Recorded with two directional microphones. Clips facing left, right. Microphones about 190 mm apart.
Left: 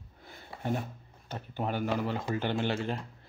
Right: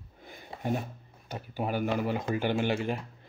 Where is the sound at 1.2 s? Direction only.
10° right (ahead or behind).